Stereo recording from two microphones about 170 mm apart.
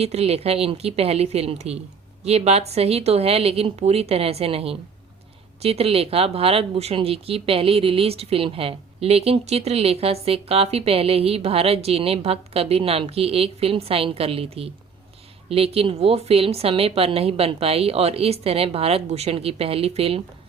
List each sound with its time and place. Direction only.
0.0 s speech: 35° right (ahead or behind)